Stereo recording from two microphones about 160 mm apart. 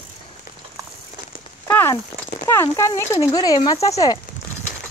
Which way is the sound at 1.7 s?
10° left (ahead or behind).